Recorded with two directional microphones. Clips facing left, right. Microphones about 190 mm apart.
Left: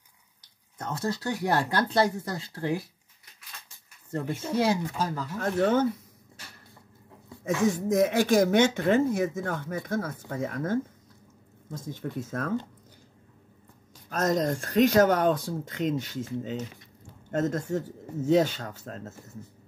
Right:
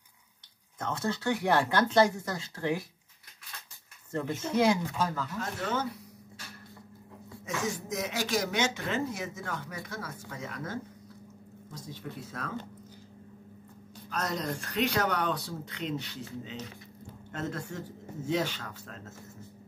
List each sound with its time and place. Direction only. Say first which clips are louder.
0.8 s speech: even; 35° left (ahead or behind)
4.6 s speech: even; 35° left (ahead or behind)
5.4 s speech: left 11 dB; 50° left (ahead or behind)
7.4 s speech: left 9 dB; 55° left (ahead or behind)
14.1 s speech: left 8 dB; 40° left (ahead or behind)